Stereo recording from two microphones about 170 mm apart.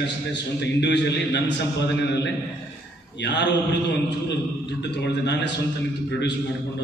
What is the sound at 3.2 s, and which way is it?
A man's voice, 90° left.